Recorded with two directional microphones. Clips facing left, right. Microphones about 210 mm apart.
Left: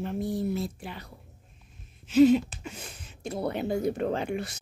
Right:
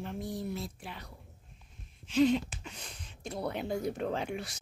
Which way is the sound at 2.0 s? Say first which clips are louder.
Left 7 dB; 5° left (ahead or behind).